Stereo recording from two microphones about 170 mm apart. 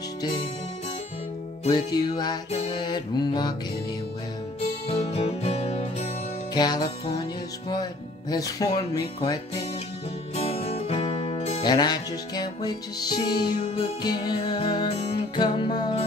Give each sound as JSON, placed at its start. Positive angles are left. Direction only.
{"t": 1.9, "sound": "music", "side_deg": 25}
{"t": 4.8, "sound": "music", "side_deg": 35}
{"t": 6.5, "sound": "music", "side_deg": 25}
{"t": 10.3, "sound": "music", "side_deg": 35}
{"t": 11.6, "sound": "music", "side_deg": 25}
{"t": 13.6, "sound": "music", "side_deg": 35}
{"t": 14.0, "sound": "music", "side_deg": 25}